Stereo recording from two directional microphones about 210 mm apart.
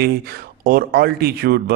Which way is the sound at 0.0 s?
45° right (ahead or behind).